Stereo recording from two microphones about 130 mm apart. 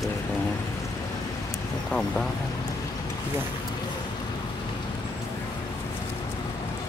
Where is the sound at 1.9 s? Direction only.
5° left (ahead or behind).